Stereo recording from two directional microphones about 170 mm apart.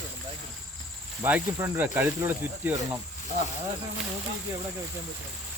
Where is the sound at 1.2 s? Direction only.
10° right (ahead or behind).